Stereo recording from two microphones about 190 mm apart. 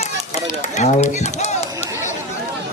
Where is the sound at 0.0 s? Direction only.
35° left (ahead or behind).